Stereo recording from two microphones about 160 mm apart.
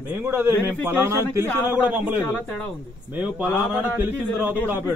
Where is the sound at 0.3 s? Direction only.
15° right (ahead or behind).